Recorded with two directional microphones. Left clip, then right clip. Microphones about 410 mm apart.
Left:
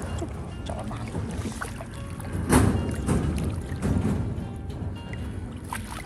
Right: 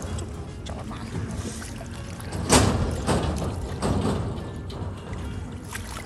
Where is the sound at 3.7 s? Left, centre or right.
Centre.